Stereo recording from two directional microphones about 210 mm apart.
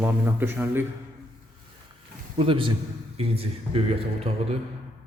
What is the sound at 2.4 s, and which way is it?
Speech, 25° right (ahead or behind).